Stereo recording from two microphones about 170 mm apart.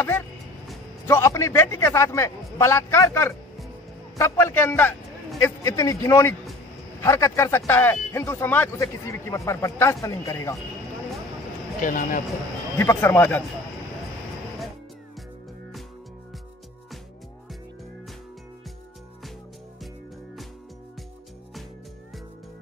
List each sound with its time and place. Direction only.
1.0 s a man's voice: 15° left (ahead or behind)
11.8 s speech: 50° left (ahead or behind)
12.7 s speech: 15° left (ahead or behind)